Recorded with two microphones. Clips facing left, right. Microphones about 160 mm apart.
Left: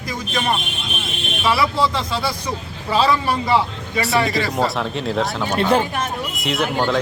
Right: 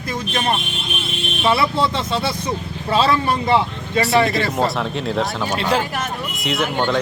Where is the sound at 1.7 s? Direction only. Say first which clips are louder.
Right 1 dB; 25° right (ahead or behind).